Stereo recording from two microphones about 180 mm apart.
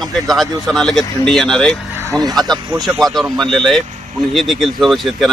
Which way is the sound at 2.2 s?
20° right (ahead or behind).